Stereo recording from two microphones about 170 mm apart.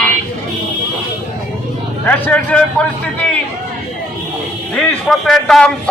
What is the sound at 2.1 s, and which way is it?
Speech, 10° left (ahead or behind).